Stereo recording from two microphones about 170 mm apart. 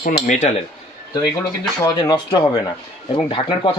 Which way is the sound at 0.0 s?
50° left (ahead or behind).